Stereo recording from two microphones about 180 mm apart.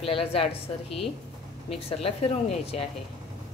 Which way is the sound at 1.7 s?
35° left (ahead or behind).